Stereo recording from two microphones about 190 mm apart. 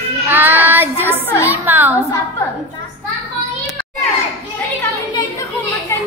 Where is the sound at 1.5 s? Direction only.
10° right (ahead or behind).